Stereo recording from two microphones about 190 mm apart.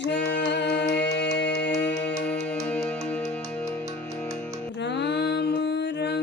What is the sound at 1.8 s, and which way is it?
Music, 10° left (ahead or behind).